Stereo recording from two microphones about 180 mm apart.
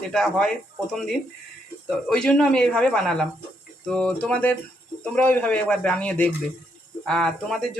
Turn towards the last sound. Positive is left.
turn(degrees=0)  # may be behind; listen again after turning